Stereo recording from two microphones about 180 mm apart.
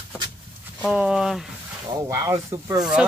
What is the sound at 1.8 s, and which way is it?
Speech, 20° right (ahead or behind).